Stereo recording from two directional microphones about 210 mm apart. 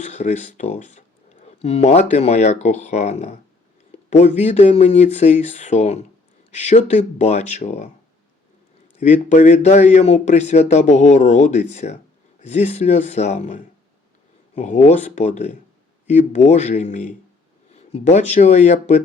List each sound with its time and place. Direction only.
0.0 s speech: 30° left (ahead or behind)
9.0 s speech: 30° left (ahead or behind)